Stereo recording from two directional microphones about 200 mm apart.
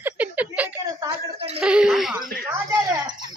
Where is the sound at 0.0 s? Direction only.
5° right (ahead or behind).